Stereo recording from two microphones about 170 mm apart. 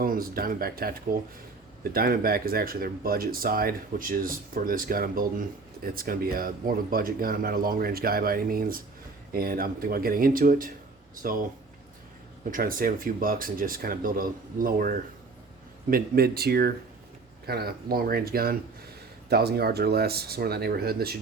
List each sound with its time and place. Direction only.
0.0 s speech: 60° right (ahead or behind)
12.5 s speech: 55° right (ahead or behind)